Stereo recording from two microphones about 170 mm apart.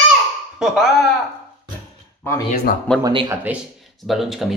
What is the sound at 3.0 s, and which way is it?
Speech, 30° right (ahead or behind).